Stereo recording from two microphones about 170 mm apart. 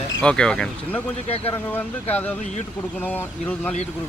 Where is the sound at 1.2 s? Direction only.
35° left (ahead or behind).